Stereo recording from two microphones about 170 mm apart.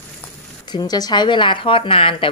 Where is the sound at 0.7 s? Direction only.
25° left (ahead or behind).